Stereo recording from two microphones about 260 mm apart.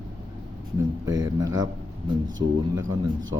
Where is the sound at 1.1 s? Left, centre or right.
Centre.